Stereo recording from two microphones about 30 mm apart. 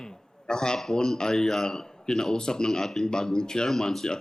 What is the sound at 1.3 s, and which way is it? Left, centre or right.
Speech, centre.